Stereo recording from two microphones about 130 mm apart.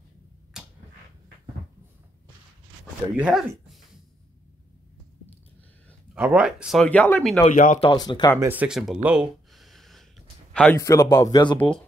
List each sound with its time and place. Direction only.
0.5 s a sound: 5° right (ahead or behind)
3.2 s speech: 5° right (ahead or behind)
6.1 s speech: 10° right (ahead or behind)
6.8 s speech: 10° left (ahead or behind)
7.4 s speech: 80° left
7.9 s speech: 30° left (ahead or behind)
8.4 s a sound: 15° right (ahead or behind); by 10.8 s 10° left (ahead or behind)
10.8 s speech: 25° left (ahead or behind)
11.5 s speech: 10° left (ahead or behind)